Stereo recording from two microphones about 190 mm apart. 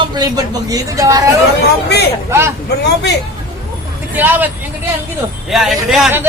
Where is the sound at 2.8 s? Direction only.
60° left (ahead or behind).